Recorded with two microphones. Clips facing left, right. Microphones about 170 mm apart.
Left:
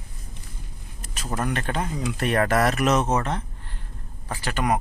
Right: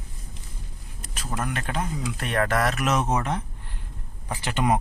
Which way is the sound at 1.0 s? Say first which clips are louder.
Left 3 dB; centre (ahead or behind).